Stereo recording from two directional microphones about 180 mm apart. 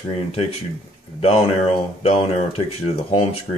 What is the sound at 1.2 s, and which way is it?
Speech, 35° left (ahead or behind).